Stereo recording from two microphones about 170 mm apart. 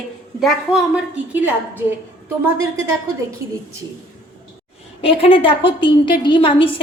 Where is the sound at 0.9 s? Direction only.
10° right (ahead or behind).